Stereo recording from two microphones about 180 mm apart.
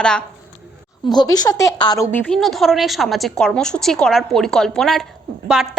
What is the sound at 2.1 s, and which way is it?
A woman's voice, centre (ahead or behind).